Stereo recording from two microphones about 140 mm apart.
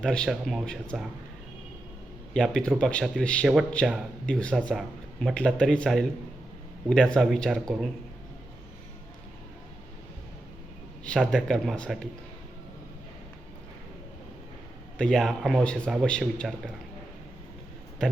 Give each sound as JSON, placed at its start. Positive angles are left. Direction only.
{"t": 0.0, "sound": "speech", "side_deg": 5}
{"t": 2.3, "sound": "speech", "side_deg": 5}
{"t": 11.3, "sound": "speech", "side_deg": 5}
{"t": 14.9, "sound": "speech", "side_deg": 5}